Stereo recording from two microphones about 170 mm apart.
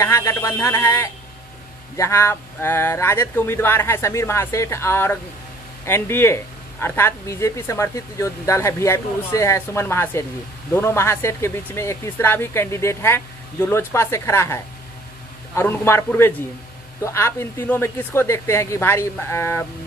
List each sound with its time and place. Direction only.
0.0 s speech: 20° left (ahead or behind)